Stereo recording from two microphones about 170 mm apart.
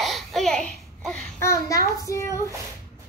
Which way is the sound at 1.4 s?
15° left (ahead or behind).